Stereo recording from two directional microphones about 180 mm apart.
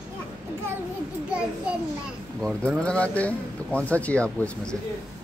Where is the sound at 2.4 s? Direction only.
5° left (ahead or behind).